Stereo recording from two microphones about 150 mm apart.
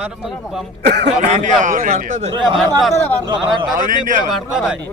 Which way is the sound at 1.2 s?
55° right (ahead or behind).